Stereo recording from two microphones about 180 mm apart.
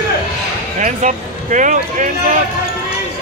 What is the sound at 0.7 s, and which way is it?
Speech, 45° right (ahead or behind).